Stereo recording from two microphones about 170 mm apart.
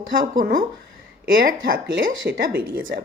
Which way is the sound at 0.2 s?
55° right (ahead or behind).